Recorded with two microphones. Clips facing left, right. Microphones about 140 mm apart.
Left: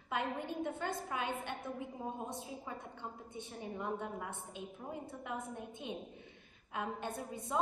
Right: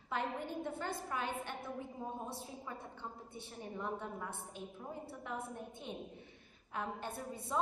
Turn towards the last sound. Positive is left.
turn(degrees=20)  # may be behind; listen again after turning